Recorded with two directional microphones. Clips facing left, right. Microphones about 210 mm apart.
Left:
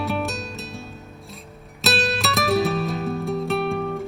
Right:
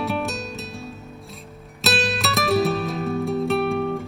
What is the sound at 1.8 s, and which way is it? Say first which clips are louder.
Music: even; centre (ahead or behind).